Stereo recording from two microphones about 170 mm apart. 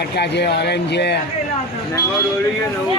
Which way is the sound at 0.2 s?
75° left (ahead or behind).